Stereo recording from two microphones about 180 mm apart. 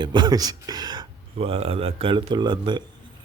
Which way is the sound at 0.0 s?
25° right (ahead or behind).